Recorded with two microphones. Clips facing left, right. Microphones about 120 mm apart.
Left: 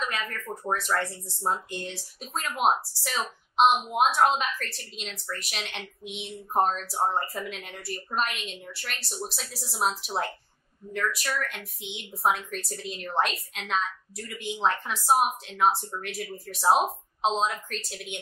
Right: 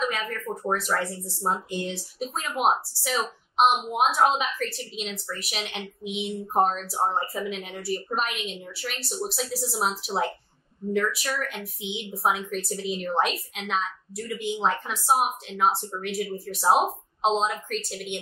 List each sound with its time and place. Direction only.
0.1 s a woman's voice: centre (ahead or behind)